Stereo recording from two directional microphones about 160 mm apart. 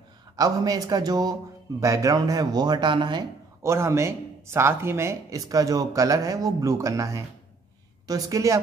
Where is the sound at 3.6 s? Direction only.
15° right (ahead or behind).